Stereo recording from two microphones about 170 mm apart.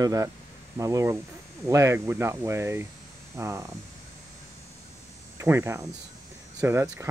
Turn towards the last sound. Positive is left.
turn(degrees=-15)  # may be behind; listen again after turning